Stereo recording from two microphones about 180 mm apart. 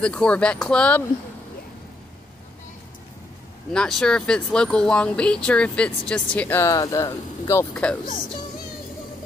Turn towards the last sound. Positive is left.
turn(degrees=5)  # may be behind; listen again after turning